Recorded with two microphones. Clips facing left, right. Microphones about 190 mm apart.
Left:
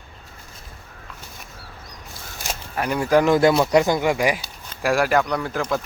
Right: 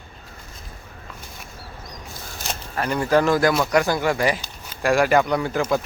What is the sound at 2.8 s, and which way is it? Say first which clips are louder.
Speech: left 1 dB; 10° left (ahead or behind).